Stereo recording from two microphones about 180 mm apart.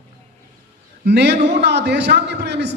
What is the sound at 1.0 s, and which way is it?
A man's voice, 65° right (ahead or behind).